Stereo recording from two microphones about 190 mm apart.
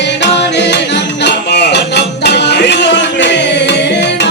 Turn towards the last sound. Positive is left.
turn(degrees=65)  # may be behind; listen again after turning